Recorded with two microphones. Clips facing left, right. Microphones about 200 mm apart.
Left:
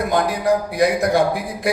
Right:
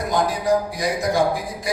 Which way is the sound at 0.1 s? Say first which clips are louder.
Even; 60° left (ahead or behind).